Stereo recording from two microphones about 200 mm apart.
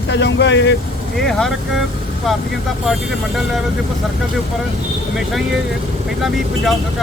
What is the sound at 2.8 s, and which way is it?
Speech, centre (ahead or behind).